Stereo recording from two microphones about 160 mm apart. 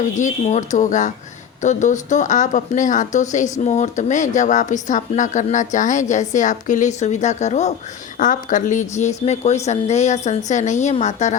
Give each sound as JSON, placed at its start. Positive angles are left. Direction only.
{"t": 0.2, "sound": "speech", "side_deg": 50}